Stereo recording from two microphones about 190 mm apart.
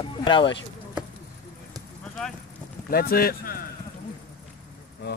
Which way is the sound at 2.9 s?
55° left (ahead or behind).